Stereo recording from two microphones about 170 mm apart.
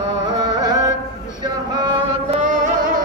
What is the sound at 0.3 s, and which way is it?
Carnatic music, 20° right (ahead or behind).